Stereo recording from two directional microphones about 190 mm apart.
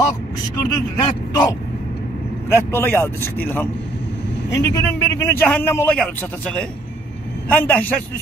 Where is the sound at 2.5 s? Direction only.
10° left (ahead or behind).